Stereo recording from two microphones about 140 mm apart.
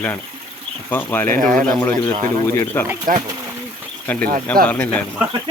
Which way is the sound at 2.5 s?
15° left (ahead or behind).